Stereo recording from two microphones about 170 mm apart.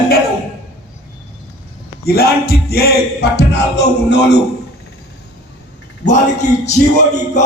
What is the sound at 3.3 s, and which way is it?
Music, 80° left.